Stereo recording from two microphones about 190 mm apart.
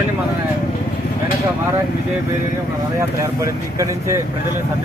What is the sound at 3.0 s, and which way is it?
Speech, 15° right (ahead or behind).